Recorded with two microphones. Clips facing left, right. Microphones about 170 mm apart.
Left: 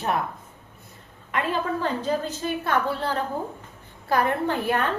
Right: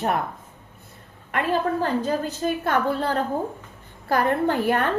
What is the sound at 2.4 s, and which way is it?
Speech, 45° right (ahead or behind).